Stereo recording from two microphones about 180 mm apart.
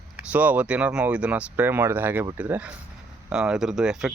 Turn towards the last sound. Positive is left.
turn(degrees=-5)  # may be behind; listen again after turning